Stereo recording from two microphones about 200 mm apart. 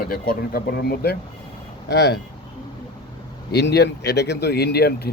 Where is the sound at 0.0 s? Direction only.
45° left (ahead or behind).